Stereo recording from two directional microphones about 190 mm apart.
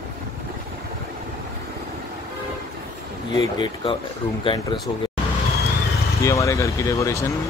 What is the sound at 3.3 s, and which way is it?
Speech, 25° left (ahead or behind).